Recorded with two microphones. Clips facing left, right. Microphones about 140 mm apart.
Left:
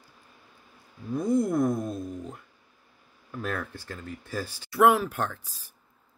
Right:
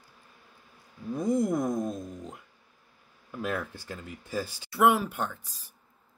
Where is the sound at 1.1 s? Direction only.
Centre (ahead or behind).